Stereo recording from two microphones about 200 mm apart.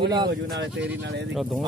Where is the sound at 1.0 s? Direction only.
60° right (ahead or behind).